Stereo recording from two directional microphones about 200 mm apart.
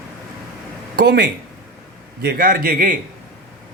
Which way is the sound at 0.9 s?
55° right (ahead or behind).